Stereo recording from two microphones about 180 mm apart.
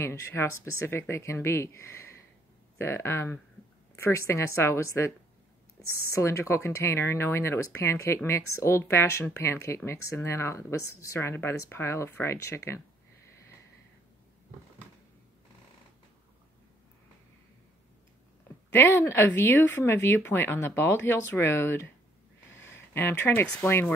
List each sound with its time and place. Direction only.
0.0 s speech: 15° left (ahead or behind)
18.8 s speech: 10° left (ahead or behind)